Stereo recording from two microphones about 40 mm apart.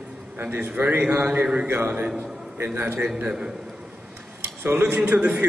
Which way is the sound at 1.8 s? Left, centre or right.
Right.